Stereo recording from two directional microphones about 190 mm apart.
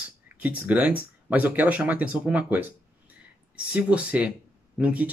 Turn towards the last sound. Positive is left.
turn(degrees=-5)  # may be behind; listen again after turning